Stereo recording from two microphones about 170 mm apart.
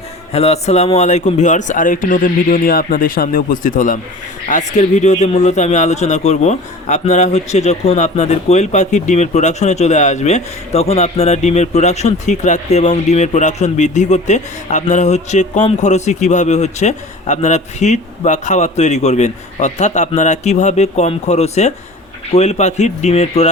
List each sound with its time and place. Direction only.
0.3 s speech: 40° left (ahead or behind)